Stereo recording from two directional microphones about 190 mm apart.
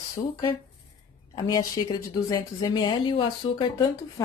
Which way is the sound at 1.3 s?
20° left (ahead or behind).